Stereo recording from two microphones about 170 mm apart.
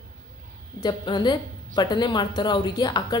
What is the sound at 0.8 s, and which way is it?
A woman's voice, 25° left (ahead or behind).